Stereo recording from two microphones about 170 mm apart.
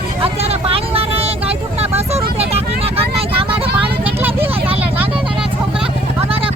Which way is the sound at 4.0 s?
10° right (ahead or behind).